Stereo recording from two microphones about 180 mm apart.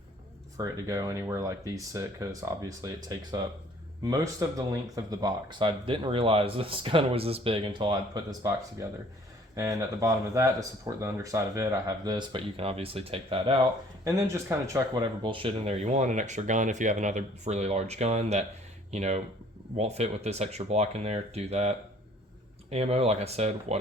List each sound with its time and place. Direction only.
0.5 s speech: 20° right (ahead or behind)
14.0 s speech: 15° right (ahead or behind)
15.2 s speech: 30° right (ahead or behind)